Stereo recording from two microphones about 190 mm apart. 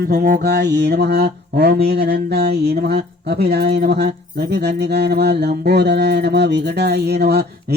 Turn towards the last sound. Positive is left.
turn(degrees=-60)  # may be behind; listen again after turning